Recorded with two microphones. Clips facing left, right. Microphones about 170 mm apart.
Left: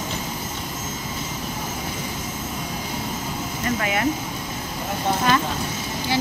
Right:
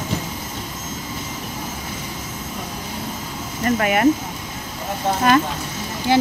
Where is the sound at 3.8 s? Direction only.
50° right (ahead or behind).